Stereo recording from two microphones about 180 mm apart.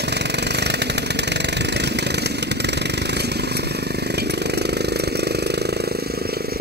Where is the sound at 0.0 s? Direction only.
70° right (ahead or behind).